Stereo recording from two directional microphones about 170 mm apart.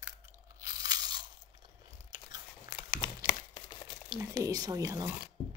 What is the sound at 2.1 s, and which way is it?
Biting, 25° right (ahead or behind).